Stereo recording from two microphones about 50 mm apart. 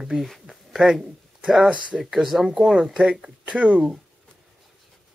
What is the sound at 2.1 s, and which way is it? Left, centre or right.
Speech, centre.